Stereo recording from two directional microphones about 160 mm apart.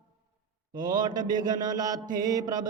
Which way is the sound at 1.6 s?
25° right (ahead or behind).